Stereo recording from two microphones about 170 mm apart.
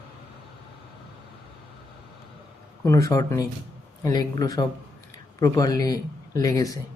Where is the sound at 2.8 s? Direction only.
15° left (ahead or behind).